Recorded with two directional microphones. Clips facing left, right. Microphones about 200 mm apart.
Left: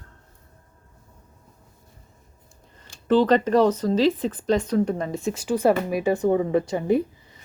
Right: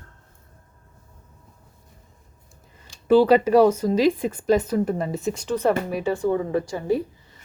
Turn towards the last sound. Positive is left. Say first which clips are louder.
# left 2 dB
turn(degrees=20)  # may be behind; listen again after turning